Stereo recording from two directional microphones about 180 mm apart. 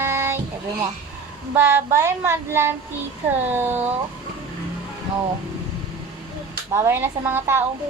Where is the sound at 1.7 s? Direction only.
15° right (ahead or behind).